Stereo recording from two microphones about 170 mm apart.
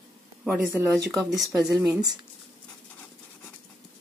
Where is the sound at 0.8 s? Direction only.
10° right (ahead or behind).